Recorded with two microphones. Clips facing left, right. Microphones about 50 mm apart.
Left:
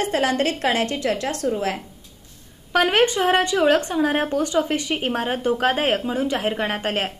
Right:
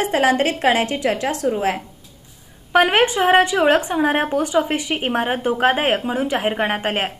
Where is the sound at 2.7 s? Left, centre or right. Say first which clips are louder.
Right 3 dB; right.